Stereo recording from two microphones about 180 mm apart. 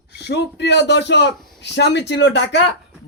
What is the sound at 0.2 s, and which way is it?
A man's voice, 70° left (ahead or behind).